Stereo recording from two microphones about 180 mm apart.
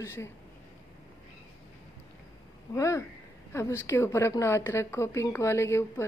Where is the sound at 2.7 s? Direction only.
15° left (ahead or behind).